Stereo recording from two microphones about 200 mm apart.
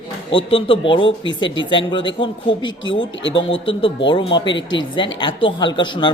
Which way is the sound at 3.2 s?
65° left (ahead or behind).